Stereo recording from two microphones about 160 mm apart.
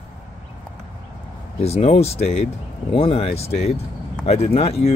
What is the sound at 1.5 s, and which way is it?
Speech, 40° left (ahead or behind).